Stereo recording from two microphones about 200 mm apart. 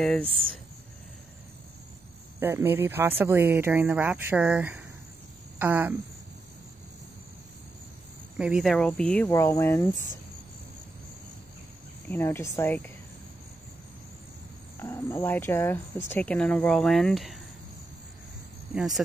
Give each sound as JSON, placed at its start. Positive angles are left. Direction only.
{"t": 0.0, "sound": "speech", "side_deg": 5}
{"t": 2.4, "sound": "speech", "side_deg": -10}
{"t": 8.4, "sound": "speech", "side_deg": -5}
{"t": 9.3, "sound": "speech", "side_deg": 15}
{"t": 12.1, "sound": "speech", "side_deg": 10}
{"t": 14.8, "sound": "speech", "side_deg": 15}